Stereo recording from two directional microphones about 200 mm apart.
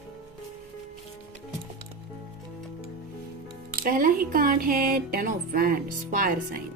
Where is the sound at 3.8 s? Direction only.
45° right (ahead or behind).